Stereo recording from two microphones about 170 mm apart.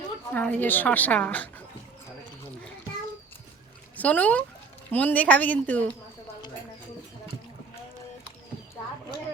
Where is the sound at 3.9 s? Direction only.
10° left (ahead or behind).